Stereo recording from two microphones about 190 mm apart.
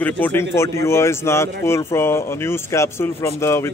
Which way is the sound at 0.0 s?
10° left (ahead or behind).